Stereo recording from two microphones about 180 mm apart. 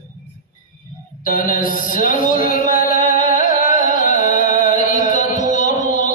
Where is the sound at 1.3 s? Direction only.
50° left (ahead or behind).